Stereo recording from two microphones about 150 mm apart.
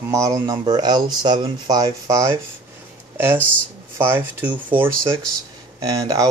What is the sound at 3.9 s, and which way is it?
Speech, 15° right (ahead or behind).